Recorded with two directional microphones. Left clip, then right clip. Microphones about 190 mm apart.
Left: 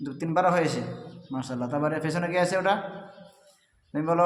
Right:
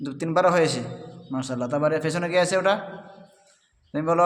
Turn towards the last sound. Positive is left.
turn(degrees=-30)  # may be behind; listen again after turning